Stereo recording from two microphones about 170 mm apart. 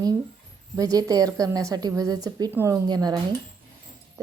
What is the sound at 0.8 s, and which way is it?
A woman's voice, 20° right (ahead or behind).